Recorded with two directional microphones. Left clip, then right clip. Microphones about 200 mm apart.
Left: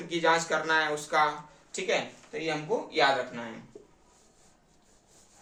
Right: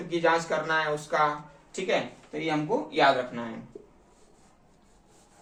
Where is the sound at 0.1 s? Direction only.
30° left (ahead or behind).